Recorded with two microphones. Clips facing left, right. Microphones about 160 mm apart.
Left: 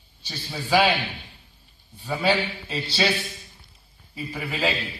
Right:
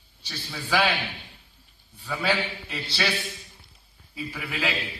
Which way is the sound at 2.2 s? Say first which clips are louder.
Left 4 dB; 25° left (ahead or behind).